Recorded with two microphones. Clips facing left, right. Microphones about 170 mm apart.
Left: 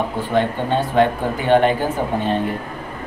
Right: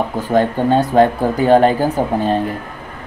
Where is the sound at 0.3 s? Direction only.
40° right (ahead or behind).